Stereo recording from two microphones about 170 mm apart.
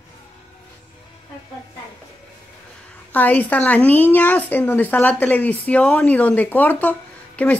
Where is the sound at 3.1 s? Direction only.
10° left (ahead or behind).